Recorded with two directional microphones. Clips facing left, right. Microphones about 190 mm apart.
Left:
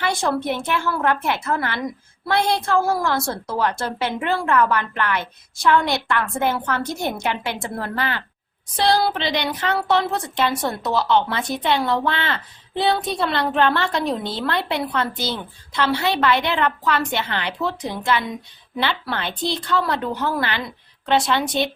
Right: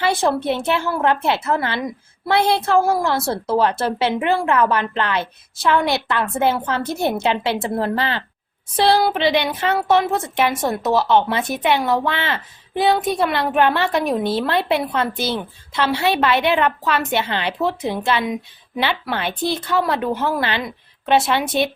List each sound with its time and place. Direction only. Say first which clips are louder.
0.0 s a woman's voice: right 3 dB; 20° right (ahead or behind)